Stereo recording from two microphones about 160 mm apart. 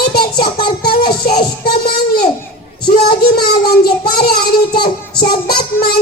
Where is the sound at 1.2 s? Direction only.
75° left (ahead or behind).